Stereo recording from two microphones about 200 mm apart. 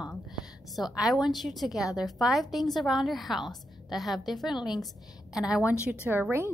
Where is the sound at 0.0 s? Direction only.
20° left (ahead or behind).